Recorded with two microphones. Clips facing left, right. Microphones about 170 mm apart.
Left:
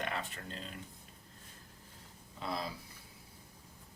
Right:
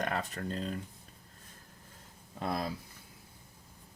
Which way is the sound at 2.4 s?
50° right (ahead or behind).